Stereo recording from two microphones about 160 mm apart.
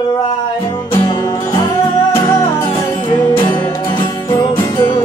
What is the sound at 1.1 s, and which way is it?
Music, 20° left (ahead or behind).